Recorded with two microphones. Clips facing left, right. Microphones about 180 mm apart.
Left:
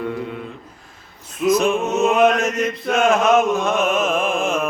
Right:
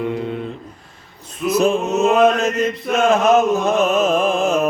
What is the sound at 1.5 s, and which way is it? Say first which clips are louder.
Mantra: right 6 dB; 35° right (ahead or behind).